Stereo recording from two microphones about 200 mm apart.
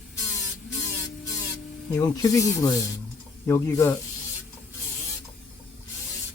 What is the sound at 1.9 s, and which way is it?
Speech, 15° left (ahead or behind).